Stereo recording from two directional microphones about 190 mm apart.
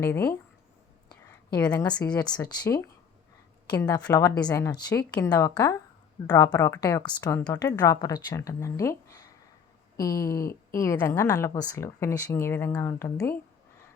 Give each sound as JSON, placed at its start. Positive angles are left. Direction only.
{"t": 0.0, "sound": "speech", "side_deg": 15}
{"t": 1.5, "sound": "speech", "side_deg": 20}